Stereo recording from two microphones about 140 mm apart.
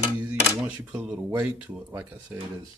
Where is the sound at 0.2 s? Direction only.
10° right (ahead or behind).